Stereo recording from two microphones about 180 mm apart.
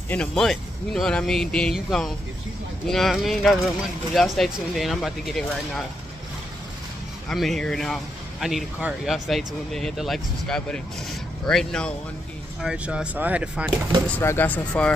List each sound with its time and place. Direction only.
0.1 s speech: 5° left (ahead or behind)
7.2 s speech: centre (ahead or behind)
14.1 s speech: 10° left (ahead or behind)